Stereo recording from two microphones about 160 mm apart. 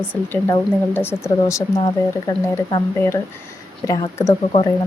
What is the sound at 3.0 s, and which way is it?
Speech, 15° left (ahead or behind).